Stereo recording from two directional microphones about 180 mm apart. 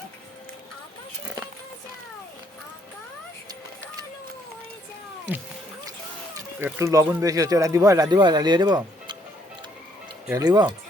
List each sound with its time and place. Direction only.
6.6 s speech: 15° right (ahead or behind)
10.2 s speech: 20° right (ahead or behind)